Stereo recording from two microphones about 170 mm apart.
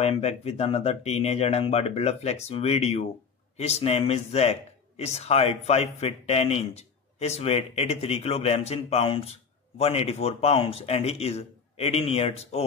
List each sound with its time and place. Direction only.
0.0 s speech: 40° left (ahead or behind)